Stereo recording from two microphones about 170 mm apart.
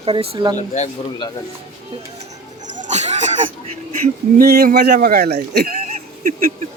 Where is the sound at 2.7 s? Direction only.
45° right (ahead or behind).